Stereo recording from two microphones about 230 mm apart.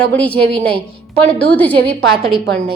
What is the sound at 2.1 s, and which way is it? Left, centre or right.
Speech, right.